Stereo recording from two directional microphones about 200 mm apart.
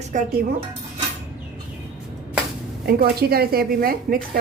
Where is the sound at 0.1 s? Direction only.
40° right (ahead or behind).